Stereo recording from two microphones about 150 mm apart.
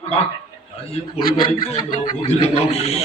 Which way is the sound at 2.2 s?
45° left (ahead or behind).